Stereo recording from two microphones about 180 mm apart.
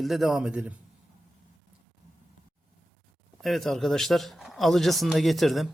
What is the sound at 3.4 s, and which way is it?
A man's voice, centre (ahead or behind).